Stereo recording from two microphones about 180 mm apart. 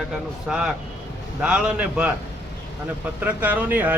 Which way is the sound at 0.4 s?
5° right (ahead or behind).